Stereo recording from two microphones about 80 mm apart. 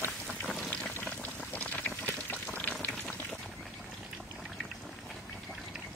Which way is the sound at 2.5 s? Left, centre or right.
Left.